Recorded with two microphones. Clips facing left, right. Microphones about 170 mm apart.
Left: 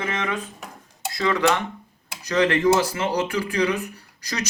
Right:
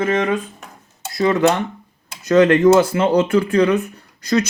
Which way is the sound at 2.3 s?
50° right (ahead or behind).